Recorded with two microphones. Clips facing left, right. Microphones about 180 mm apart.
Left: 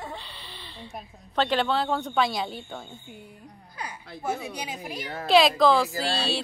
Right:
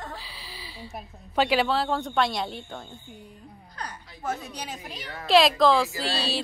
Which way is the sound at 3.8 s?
10° left (ahead or behind).